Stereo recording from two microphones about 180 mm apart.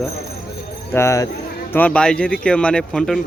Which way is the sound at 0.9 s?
15° left (ahead or behind).